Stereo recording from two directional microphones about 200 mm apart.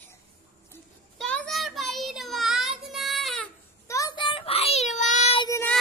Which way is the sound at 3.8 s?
15° left (ahead or behind).